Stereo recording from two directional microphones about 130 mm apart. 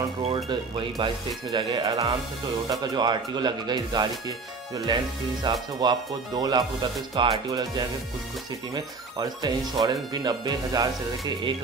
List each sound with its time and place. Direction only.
0.5 s speech: 35° right (ahead or behind)